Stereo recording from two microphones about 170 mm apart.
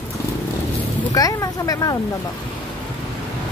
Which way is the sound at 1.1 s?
20° left (ahead or behind).